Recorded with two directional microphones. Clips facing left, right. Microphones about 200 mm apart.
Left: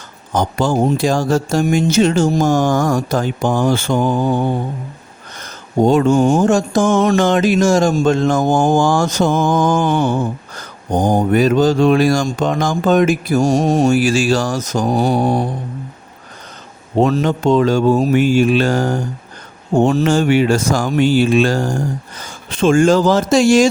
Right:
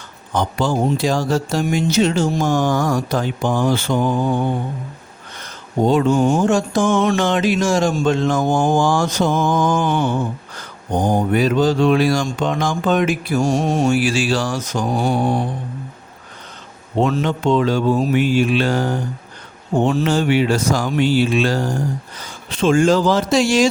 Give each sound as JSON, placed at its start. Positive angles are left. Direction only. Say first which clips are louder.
{"t": 0.3, "sound": "mantra", "louder": "left 3 dB", "side_deg": 45}
{"t": 5.4, "sound": "mantra", "louder": "left 4 dB", "side_deg": 45}
{"t": 17.0, "sound": "mantra", "louder": "left 4 dB", "side_deg": 40}